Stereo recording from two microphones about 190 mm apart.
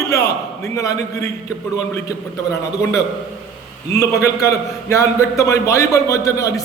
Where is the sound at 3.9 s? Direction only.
15° left (ahead or behind).